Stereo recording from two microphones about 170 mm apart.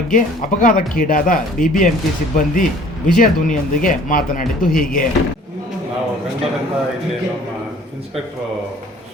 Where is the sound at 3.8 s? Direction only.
55° left (ahead or behind).